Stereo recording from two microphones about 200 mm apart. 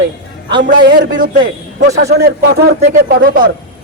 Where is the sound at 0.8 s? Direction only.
55° right (ahead or behind).